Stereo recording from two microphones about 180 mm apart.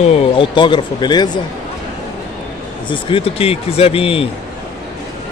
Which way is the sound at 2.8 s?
30° left (ahead or behind).